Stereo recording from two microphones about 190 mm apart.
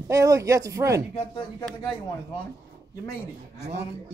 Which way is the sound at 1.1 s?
25° left (ahead or behind).